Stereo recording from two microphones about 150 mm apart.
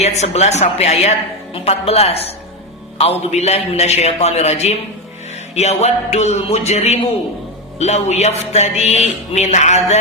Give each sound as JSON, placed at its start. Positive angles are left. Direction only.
{"t": 0.0, "sound": "speech", "side_deg": 45}